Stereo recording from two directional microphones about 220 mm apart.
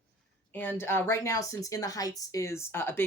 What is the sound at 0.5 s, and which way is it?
A woman's voice, 10° left (ahead or behind).